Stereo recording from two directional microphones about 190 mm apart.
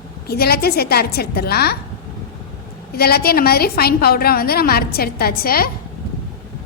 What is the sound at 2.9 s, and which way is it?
A woman's voice, 55° left (ahead or behind).